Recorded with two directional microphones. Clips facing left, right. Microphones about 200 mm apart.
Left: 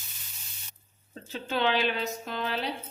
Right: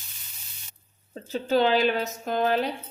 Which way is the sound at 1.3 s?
40° right (ahead or behind).